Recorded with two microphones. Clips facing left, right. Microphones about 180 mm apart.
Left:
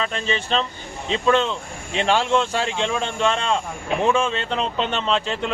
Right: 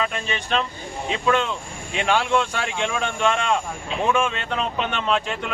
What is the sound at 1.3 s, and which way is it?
Speech, 25° left (ahead or behind).